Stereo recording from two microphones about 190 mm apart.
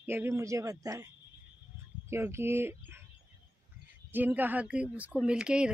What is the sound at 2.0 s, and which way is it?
Speech, 15° right (ahead or behind).